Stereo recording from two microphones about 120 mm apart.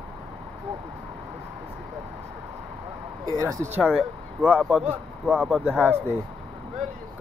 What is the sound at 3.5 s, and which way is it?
Speech, 25° right (ahead or behind).